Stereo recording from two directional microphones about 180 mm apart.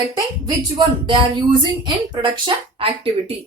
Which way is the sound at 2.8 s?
30° right (ahead or behind).